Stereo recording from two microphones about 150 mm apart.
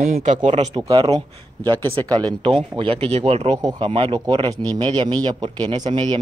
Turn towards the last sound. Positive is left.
turn(degrees=-30)  # may be behind; listen again after turning